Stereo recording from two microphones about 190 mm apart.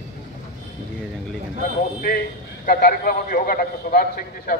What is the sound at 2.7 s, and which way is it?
A man's voice, 50° left (ahead or behind).